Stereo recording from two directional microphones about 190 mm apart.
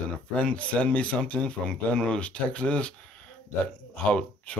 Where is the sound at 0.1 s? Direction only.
5° left (ahead or behind).